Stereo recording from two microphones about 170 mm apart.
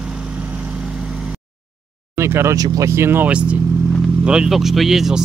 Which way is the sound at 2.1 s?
15° right (ahead or behind).